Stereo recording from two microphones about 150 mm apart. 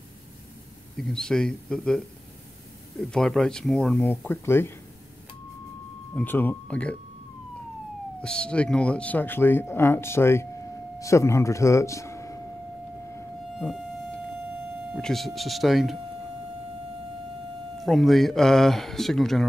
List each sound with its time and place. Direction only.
0.9 s speech: 5° left (ahead or behind)
4.0 s speech: 15° left (ahead or behind)
6.1 s speech: 15° left (ahead or behind)
8.2 s speech: 5° left (ahead or behind)
15.0 s speech: centre (ahead or behind)
17.8 s speech: centre (ahead or behind)